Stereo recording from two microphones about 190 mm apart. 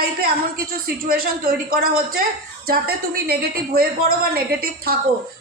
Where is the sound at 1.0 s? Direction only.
50° right (ahead or behind).